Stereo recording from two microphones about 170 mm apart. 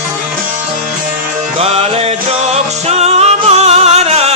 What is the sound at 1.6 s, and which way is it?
Music, 35° right (ahead or behind).